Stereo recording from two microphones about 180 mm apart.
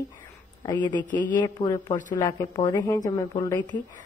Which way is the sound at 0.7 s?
25° left (ahead or behind).